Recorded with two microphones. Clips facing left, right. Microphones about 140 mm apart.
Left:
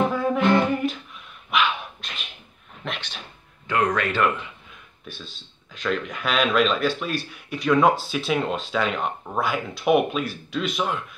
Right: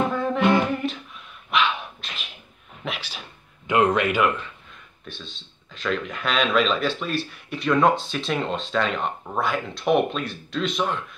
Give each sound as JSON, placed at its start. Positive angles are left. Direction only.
{"t": 0.1, "sound": "humming", "side_deg": 5}
{"t": 0.4, "sound": "a capella", "side_deg": 0}
{"t": 1.5, "sound": "dog", "side_deg": 0}
{"t": 2.8, "sound": "a sound", "side_deg": -5}
{"t": 3.6, "sound": "speech", "side_deg": -20}
{"t": 5.0, "sound": "speech", "side_deg": 5}